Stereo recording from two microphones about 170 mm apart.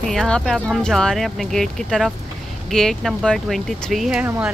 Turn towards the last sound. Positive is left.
turn(degrees=-5)  # may be behind; listen again after turning